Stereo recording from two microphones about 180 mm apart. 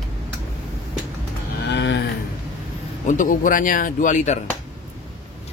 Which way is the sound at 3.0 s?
45° left (ahead or behind).